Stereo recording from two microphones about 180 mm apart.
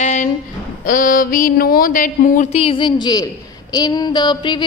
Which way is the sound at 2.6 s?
30° left (ahead or behind).